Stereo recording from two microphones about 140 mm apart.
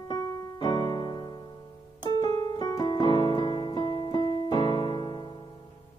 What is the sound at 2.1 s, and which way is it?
Piano, 30° left (ahead or behind).